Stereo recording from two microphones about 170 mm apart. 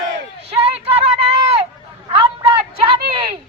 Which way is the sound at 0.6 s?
35° right (ahead or behind).